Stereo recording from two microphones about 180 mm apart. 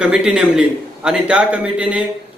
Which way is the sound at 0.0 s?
5° right (ahead or behind).